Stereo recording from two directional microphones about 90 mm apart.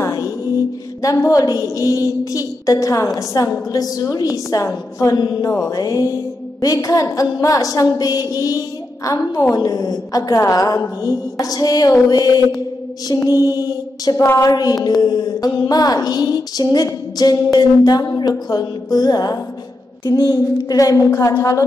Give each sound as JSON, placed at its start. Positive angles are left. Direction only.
{"t": 0.0, "sound": "music", "side_deg": 40}
{"t": 1.0, "sound": "a woman's voice", "side_deg": 40}
{"t": 5.1, "sound": "a woman's voice", "side_deg": 50}
{"t": 9.6, "sound": "mantra", "side_deg": 45}
{"t": 21.4, "sound": "a woman's voice", "side_deg": 35}